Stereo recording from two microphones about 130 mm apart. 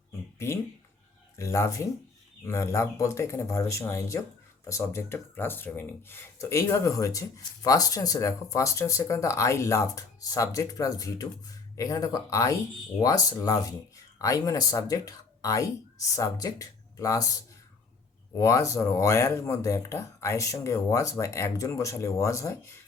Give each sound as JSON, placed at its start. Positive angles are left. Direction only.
{"t": 0.3, "sound": "speech", "side_deg": 20}